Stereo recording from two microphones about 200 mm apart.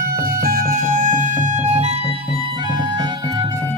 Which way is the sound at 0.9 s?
40° right (ahead or behind).